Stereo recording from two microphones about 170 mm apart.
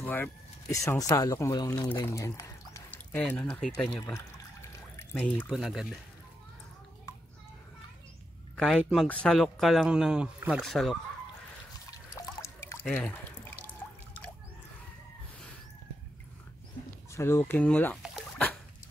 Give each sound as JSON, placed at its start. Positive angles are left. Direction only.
{"t": 0.0, "sound": "speech", "side_deg": 10}
{"t": 1.9, "sound": "pour", "side_deg": 15}
{"t": 3.7, "sound": "speech", "side_deg": 10}
{"t": 4.1, "sound": "pour", "side_deg": 15}
{"t": 5.5, "sound": "speech", "side_deg": 0}
{"t": 8.5, "sound": "speech", "side_deg": 0}
{"t": 12.2, "sound": "water", "side_deg": 15}
{"t": 12.8, "sound": "a sound", "side_deg": 5}
{"t": 17.1, "sound": "speech", "side_deg": 15}